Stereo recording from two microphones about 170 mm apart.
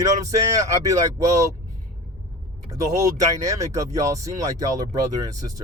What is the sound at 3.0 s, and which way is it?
Speech, 20° right (ahead or behind).